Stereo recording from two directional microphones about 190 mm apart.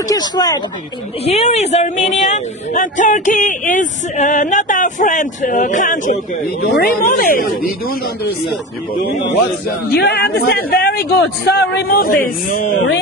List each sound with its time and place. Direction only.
0.1 s speech: 20° left (ahead or behind)
1.2 s speech: 35° left (ahead or behind)
6.6 s speech: 55° left (ahead or behind)
9.8 s speech: 55° left (ahead or behind)